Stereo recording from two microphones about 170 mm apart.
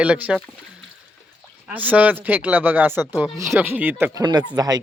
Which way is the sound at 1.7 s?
10° right (ahead or behind).